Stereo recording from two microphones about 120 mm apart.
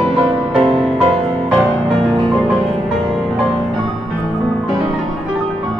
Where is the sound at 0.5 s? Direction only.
50° right (ahead or behind).